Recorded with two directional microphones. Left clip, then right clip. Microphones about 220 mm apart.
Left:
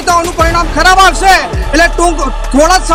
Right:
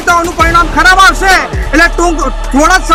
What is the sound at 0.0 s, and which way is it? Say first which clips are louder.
Speech: right 1 dB; 10° left (ahead or behind).